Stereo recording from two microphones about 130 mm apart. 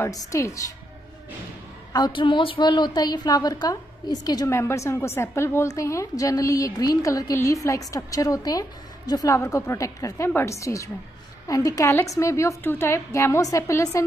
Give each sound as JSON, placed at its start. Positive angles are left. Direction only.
{"t": 0.0, "sound": "a woman's voice", "side_deg": 25}
{"t": 1.9, "sound": "a woman's voice", "side_deg": 30}